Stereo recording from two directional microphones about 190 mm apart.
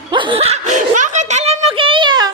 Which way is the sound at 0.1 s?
25° right (ahead or behind).